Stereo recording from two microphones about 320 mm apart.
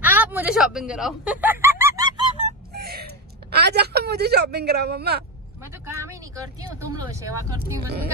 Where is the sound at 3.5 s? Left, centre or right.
Right.